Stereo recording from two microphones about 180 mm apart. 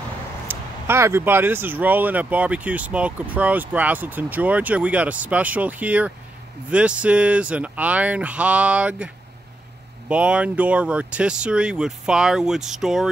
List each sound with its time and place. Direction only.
0.5 s speech: 15° right (ahead or behind)